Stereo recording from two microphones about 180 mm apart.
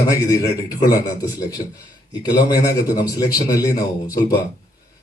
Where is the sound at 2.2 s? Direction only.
20° left (ahead or behind).